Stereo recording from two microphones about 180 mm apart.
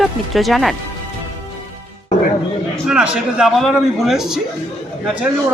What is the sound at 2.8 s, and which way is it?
Speech, 5° right (ahead or behind).